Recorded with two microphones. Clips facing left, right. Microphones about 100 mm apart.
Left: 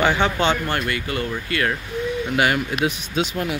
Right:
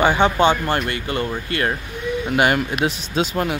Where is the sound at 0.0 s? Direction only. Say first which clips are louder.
Right 4 dB; 15° right (ahead or behind).